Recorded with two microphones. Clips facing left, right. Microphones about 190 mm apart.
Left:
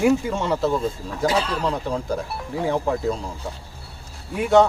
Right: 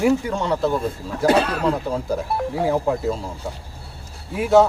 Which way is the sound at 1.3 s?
65° right (ahead or behind).